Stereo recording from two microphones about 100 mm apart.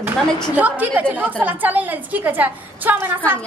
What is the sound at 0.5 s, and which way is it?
Speech, 15° right (ahead or behind).